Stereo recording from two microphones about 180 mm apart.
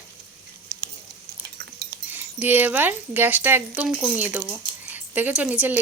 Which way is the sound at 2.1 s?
10° right (ahead or behind).